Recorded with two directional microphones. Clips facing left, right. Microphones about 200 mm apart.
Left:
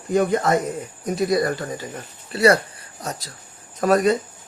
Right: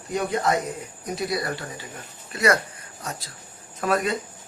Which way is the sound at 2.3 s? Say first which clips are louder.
Left 6 dB; 30° left (ahead or behind).